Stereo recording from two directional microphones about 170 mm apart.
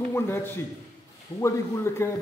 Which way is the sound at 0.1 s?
15° left (ahead or behind).